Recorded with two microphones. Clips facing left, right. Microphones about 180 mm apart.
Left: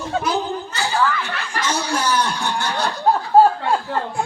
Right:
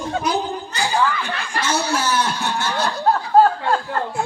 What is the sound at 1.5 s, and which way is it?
Chuckle, 10° right (ahead or behind).